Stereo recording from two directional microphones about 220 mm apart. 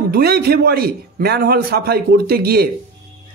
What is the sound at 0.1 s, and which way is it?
Speech, 45° right (ahead or behind).